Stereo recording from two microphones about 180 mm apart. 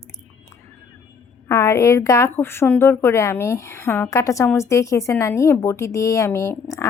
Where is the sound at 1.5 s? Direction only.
15° left (ahead or behind).